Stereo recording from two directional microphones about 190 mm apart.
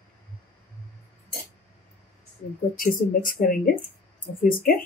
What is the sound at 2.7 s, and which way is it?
Speech, 45° left (ahead or behind).